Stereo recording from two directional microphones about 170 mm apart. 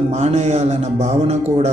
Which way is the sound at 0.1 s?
40° right (ahead or behind).